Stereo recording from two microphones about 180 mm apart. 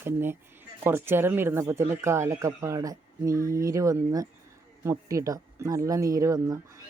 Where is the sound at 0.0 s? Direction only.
10° right (ahead or behind).